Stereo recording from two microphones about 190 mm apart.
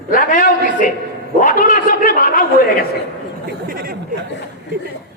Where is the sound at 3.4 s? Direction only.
50° right (ahead or behind).